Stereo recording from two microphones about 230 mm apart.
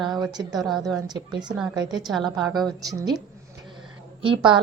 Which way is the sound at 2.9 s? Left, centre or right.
Centre.